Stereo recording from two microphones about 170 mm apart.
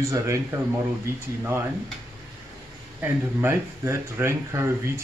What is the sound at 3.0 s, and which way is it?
Speech, 15° right (ahead or behind).